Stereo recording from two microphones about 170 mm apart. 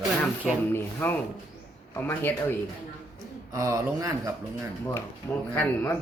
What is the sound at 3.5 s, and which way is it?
Speech, 20° right (ahead or behind).